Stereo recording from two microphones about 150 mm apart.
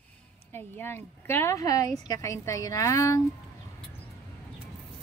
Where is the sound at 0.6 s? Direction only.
15° left (ahead or behind).